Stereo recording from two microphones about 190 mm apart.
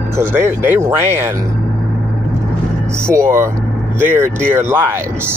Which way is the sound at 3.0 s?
15° right (ahead or behind).